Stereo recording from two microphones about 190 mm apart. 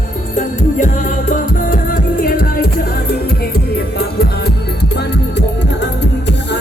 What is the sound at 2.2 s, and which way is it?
Music, 50° left (ahead or behind).